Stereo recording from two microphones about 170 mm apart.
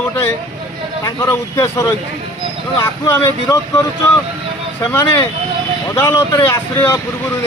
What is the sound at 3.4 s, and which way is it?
Speech, 20° left (ahead or behind).